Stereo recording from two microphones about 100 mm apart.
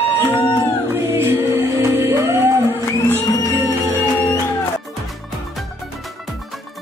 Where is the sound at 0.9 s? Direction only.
25° right (ahead or behind).